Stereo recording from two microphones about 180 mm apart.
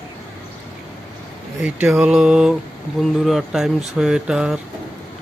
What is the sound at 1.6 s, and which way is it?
Speech, 5° right (ahead or behind).